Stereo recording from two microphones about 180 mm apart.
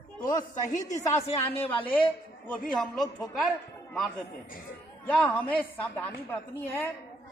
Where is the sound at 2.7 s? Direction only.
Centre (ahead or behind).